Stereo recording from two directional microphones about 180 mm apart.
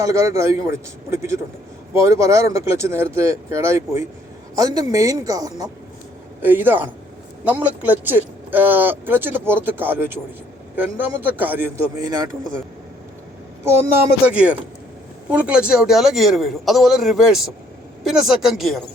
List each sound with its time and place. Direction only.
0.0 s speech: 15° right (ahead or behind)
13.7 s a man's voice: 15° right (ahead or behind)